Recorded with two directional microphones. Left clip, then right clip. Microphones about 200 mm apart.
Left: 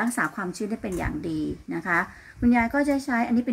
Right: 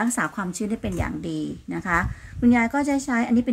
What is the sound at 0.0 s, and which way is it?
Speech, 50° right (ahead or behind).